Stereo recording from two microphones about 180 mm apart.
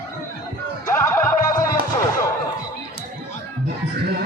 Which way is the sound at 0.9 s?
15° left (ahead or behind).